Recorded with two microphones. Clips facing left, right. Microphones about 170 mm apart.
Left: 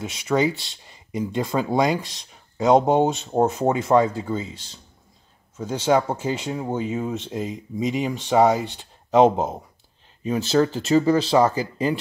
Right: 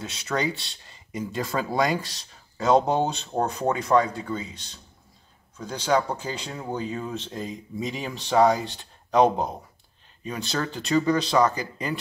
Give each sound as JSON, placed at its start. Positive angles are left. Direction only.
{"t": 0.0, "sound": "speech", "side_deg": 20}